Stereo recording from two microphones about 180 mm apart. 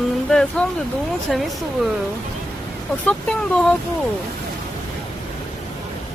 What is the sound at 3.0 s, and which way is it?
Speech, 5° left (ahead or behind).